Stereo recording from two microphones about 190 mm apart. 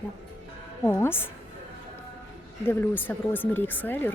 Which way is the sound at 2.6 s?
10° left (ahead or behind).